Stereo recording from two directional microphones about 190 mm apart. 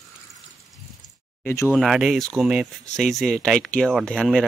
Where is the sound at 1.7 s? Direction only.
Centre (ahead or behind).